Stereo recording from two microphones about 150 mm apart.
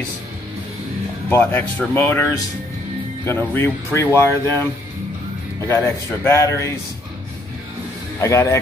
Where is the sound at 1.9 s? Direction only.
15° left (ahead or behind).